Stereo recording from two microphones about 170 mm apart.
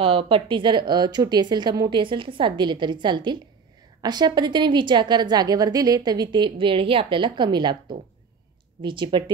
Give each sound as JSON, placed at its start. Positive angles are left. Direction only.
{"t": 0.0, "sound": "a woman's voice", "side_deg": -35}
{"t": 8.8, "sound": "a woman's voice", "side_deg": -30}